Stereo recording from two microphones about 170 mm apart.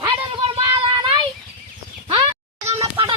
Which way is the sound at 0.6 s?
30° right (ahead or behind).